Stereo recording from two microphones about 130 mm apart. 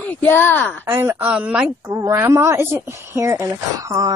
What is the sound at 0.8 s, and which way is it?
Speech, 20° right (ahead or behind).